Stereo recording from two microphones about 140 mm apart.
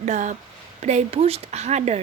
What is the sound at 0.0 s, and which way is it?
Speech, 60° right (ahead or behind).